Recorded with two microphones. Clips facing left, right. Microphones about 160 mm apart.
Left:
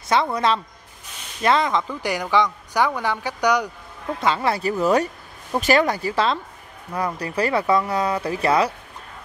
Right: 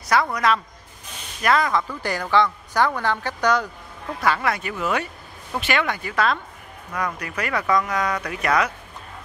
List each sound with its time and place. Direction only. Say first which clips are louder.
0.1 s a woman's voice: left 1 dB; 25° left (ahead or behind)
4.2 s speech: left 1 dB; 25° left (ahead or behind)